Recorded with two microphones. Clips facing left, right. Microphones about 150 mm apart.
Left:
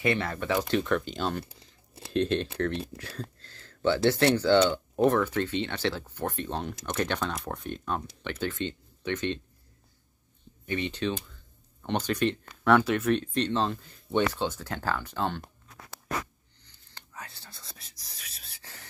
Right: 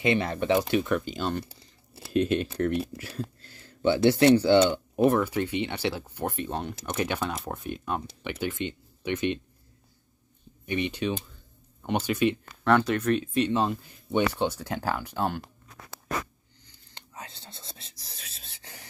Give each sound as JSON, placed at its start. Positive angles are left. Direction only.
{"t": 0.0, "sound": "speech", "side_deg": -20}
{"t": 0.7, "sound": "speech", "side_deg": -10}
{"t": 10.6, "sound": "speech", "side_deg": -15}
{"t": 16.6, "sound": "whispering", "side_deg": -20}